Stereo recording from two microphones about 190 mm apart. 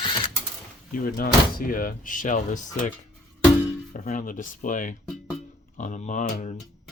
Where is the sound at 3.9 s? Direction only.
45° left (ahead or behind).